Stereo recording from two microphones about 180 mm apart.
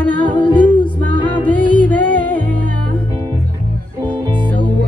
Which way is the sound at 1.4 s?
10° left (ahead or behind).